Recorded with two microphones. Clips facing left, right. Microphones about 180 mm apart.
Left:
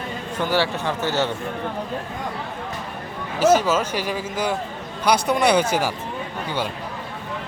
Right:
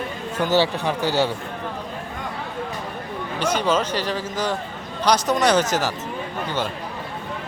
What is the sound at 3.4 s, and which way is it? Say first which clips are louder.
Speech: left 4 dB; 5° left (ahead or behind).